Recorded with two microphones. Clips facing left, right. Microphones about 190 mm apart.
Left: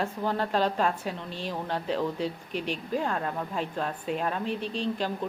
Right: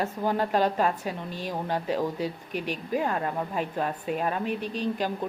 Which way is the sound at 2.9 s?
5° right (ahead or behind).